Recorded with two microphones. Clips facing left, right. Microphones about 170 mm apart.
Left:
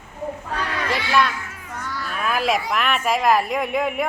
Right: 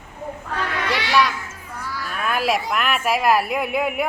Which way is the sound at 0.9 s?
80° right.